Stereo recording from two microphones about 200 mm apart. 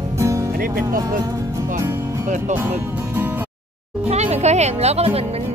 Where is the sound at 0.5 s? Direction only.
45° right (ahead or behind).